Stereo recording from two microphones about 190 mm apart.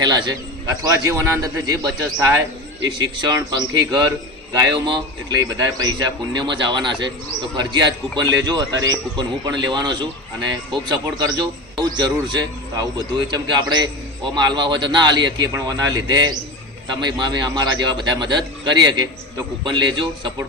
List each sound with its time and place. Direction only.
0.0 s a man's voice: 20° right (ahead or behind)
12.7 s a man's voice: 20° right (ahead or behind)